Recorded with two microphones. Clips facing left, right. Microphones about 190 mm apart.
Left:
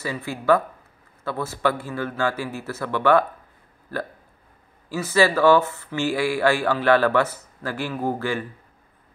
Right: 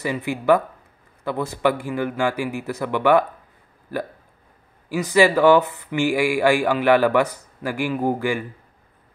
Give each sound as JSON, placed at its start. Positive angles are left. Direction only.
{"t": 0.0, "sound": "speech", "side_deg": -15}